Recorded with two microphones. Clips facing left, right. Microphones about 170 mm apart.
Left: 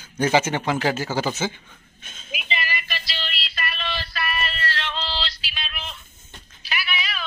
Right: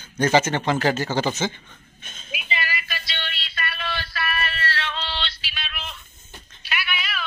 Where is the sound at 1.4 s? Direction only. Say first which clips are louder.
Right 1 dB; 10° left (ahead or behind).